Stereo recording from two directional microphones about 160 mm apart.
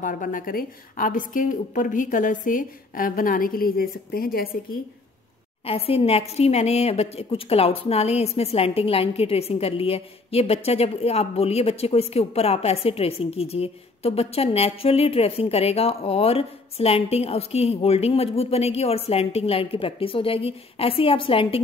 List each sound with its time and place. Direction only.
0.0 s a woman's voice: 55° left (ahead or behind)
5.7 s a woman's voice: 35° left (ahead or behind)